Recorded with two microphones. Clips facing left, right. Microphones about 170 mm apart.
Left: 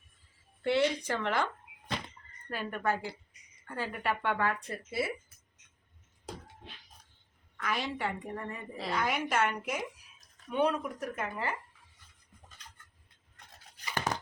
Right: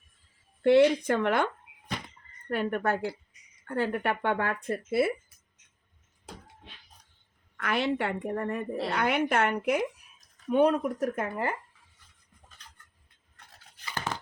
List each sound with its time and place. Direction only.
0.6 s speech: 55° right (ahead or behind)
2.5 s speech: 60° right (ahead or behind)
7.5 s speech: 65° right (ahead or behind)
10.5 s speech: 45° right (ahead or behind)
13.8 s tearing: 15° left (ahead or behind)